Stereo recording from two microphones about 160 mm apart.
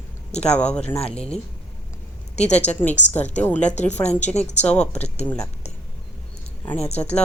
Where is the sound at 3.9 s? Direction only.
45° left (ahead or behind).